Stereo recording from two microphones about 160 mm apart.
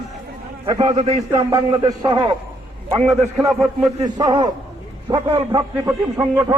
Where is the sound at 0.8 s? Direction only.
45° right (ahead or behind).